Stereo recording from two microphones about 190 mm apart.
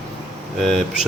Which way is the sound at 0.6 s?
5° left (ahead or behind).